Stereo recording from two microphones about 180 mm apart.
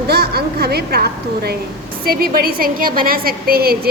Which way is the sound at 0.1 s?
60° right (ahead or behind).